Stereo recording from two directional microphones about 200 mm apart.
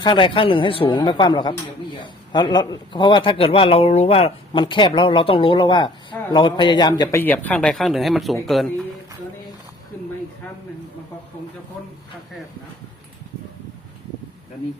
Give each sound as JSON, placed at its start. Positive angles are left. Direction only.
{"t": 0.0, "sound": "a woman's voice", "side_deg": 25}
{"t": 7.2, "sound": "speech", "side_deg": 10}